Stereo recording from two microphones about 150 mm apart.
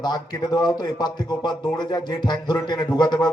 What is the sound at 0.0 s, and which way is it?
Speech, 30° left (ahead or behind).